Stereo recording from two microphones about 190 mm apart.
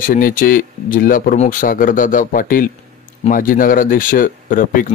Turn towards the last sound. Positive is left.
turn(degrees=45)  # may be behind; listen again after turning